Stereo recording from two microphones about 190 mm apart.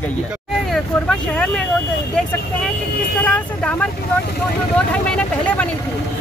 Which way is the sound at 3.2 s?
10° left (ahead or behind).